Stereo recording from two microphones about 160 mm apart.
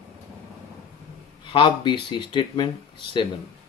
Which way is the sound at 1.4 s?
30° left (ahead or behind).